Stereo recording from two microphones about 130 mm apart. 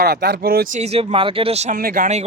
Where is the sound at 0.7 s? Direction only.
55° right (ahead or behind); by 2.3 s 75° right (ahead or behind).